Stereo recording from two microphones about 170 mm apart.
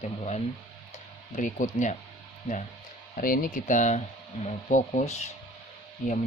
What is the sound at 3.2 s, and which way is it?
Speech, 55° left (ahead or behind).